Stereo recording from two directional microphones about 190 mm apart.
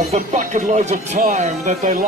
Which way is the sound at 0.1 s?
40° right (ahead or behind).